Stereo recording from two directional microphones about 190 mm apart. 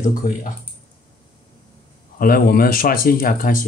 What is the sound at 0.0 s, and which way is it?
Speech, 45° left (ahead or behind).